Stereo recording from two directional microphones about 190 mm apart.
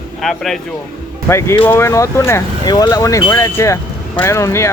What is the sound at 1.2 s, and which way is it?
Speech, 15° left (ahead or behind).